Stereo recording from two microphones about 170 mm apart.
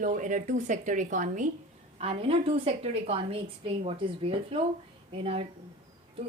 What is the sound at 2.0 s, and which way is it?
A woman's voice, 35° right (ahead or behind).